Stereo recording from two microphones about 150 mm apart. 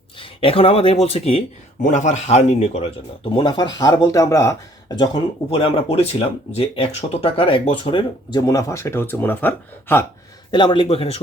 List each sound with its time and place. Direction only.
0.2 s speech: 35° left (ahead or behind)
1.8 s speech: 55° left (ahead or behind)
3.2 s speech: 30° left (ahead or behind)
4.9 s speech: 30° left (ahead or behind); by 10.1 s 15° left (ahead or behind)
10.5 s speech: 30° left (ahead or behind)